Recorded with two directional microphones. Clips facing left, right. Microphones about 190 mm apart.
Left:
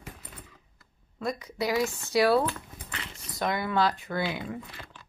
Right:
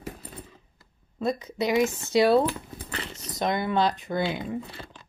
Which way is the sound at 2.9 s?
35° right (ahead or behind).